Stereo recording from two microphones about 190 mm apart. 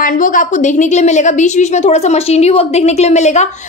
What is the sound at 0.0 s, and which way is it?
A woman's voice, 45° left (ahead or behind).